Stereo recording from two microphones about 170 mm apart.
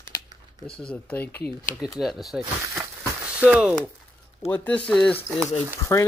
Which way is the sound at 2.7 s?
15° right (ahead or behind).